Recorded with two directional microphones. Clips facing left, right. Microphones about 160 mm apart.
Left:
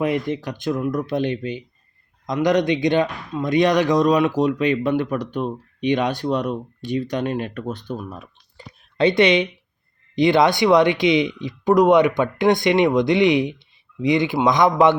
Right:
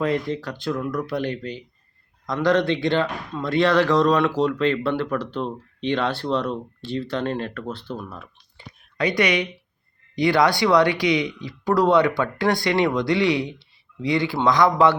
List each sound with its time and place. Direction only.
0.0 s speech: 15° left (ahead or behind)
9.0 s speech: 25° left (ahead or behind)